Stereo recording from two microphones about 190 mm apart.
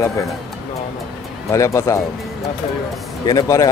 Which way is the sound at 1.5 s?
15° left (ahead or behind).